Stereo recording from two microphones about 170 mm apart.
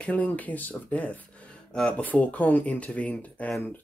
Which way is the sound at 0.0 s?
10° left (ahead or behind).